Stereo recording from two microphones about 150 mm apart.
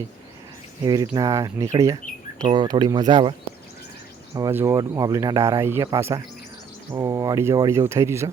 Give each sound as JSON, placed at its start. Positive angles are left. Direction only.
{"t": 0.9, "sound": "speech", "side_deg": -25}
{"t": 4.4, "sound": "speech", "side_deg": -20}